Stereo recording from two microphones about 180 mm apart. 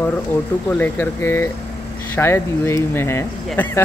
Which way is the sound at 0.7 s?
10° left (ahead or behind).